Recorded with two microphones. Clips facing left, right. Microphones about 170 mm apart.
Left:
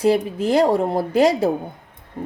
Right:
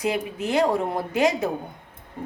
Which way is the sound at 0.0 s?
30° left (ahead or behind).